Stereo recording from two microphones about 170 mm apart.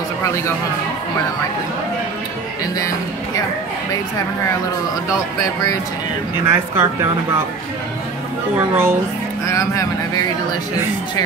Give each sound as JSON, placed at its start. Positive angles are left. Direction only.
{"t": 6.4, "sound": "speech", "side_deg": -15}
{"t": 8.5, "sound": "speech", "side_deg": -15}
{"t": 9.5, "sound": "speech", "side_deg": 20}